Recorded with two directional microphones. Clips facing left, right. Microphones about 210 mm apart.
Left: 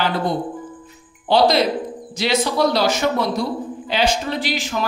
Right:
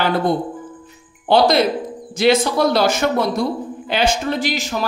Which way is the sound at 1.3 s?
50° right (ahead or behind).